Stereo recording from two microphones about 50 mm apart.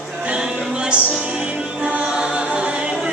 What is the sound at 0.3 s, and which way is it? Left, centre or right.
Music, right.